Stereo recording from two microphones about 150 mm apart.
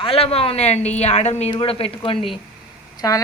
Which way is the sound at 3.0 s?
25° left (ahead or behind).